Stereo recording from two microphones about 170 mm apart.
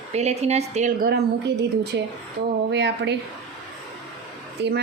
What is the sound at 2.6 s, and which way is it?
Speech, 90° right.